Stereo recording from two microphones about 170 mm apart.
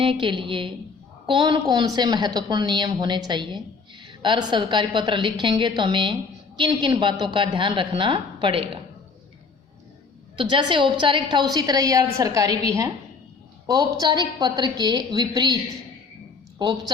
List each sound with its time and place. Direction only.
0.0 s a woman's voice: 30° right (ahead or behind)
10.3 s a woman's voice: 30° right (ahead or behind)
16.6 s speech: 25° right (ahead or behind)